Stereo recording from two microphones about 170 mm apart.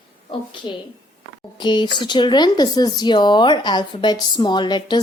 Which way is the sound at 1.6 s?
25° left (ahead or behind).